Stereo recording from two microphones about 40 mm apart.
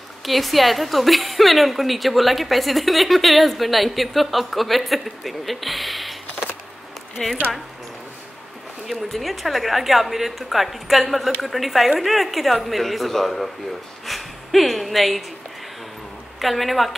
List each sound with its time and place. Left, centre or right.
0.2 s a woman's voice: centre
7.2 s speech: centre
8.9 s a woman's voice: centre
16.3 s a woman's voice: centre